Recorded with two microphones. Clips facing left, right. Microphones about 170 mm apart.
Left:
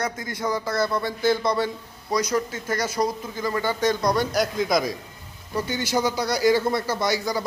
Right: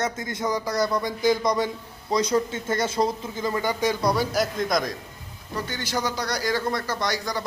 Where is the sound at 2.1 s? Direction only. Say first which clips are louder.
Right 1 dB; 25° right (ahead or behind); by 7.4 s 5° left (ahead or behind).